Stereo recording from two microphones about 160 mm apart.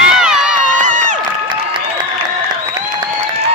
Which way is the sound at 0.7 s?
50° right (ahead or behind).